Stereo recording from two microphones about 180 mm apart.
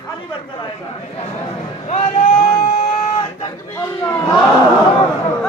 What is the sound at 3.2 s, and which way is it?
Speech, 30° left (ahead or behind).